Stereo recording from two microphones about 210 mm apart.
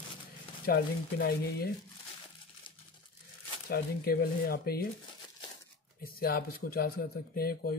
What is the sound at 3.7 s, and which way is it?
Speech, 45° left (ahead or behind).